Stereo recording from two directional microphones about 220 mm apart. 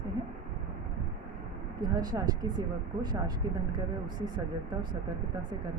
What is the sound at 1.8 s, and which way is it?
Speech, 15° right (ahead or behind).